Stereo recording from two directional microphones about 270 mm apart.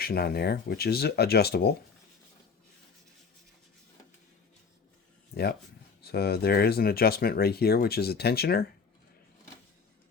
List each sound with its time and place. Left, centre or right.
0.0 s speech: left
6.0 s speech: left